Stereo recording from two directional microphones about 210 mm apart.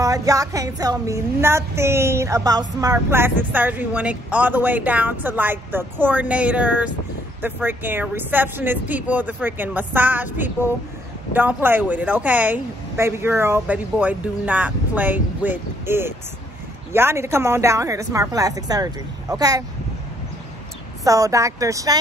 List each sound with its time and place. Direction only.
0.0 s speech: 15° right (ahead or behind)
21.0 s speech: 15° right (ahead or behind)